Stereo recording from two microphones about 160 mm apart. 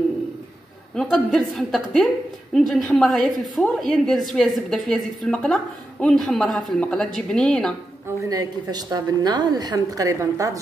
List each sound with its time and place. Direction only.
0.9 s a woman's voice: 5° left (ahead or behind)
8.2 s a woman's voice: 25° right (ahead or behind)